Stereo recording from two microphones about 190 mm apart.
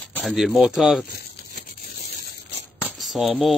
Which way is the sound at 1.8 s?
50° left (ahead or behind).